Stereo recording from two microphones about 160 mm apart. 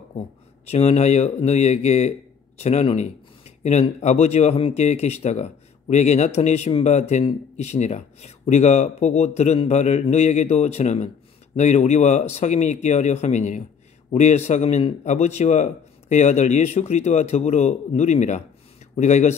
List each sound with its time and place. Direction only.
0.7 s speech: 40° left (ahead or behind)